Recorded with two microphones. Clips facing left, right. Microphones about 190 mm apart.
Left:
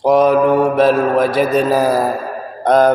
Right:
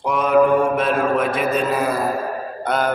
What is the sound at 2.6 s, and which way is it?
Speech, 40° left (ahead or behind).